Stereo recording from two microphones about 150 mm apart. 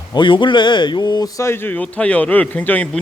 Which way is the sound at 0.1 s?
30° left (ahead or behind).